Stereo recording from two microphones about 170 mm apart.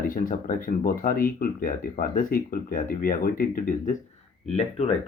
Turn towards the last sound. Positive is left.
turn(degrees=35)  # may be behind; listen again after turning